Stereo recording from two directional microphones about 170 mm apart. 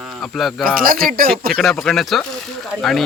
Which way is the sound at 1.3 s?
Centre (ahead or behind).